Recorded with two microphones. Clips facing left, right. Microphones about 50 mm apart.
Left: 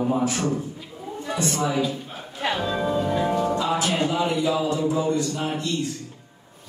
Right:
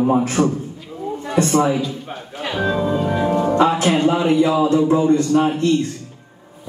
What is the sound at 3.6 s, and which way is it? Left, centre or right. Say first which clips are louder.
Mantra: right 8 dB; right.